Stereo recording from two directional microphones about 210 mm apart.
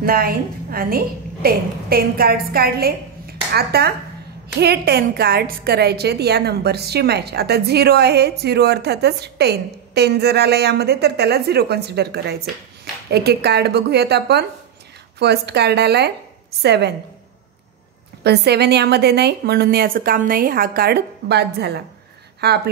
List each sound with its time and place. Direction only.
0.0 s a woman's voice: 45° right (ahead or behind)
18.2 s a woman's voice: 50° right (ahead or behind)